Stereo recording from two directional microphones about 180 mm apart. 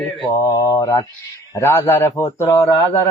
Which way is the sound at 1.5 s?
15° left (ahead or behind).